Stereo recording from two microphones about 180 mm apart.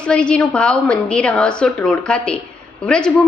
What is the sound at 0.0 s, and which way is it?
A woman's voice, 5° left (ahead or behind).